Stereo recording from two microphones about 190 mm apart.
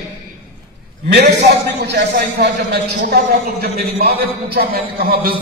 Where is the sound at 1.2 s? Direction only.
65° right (ahead or behind).